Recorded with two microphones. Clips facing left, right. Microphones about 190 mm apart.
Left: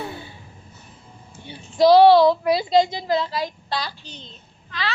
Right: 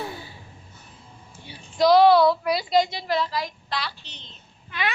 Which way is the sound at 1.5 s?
30° left (ahead or behind).